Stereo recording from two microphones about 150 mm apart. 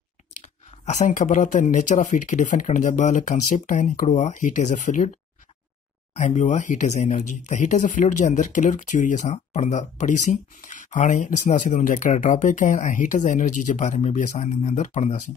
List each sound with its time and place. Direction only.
0.4 s speech: 50° left (ahead or behind)
6.1 s speech: 55° left (ahead or behind)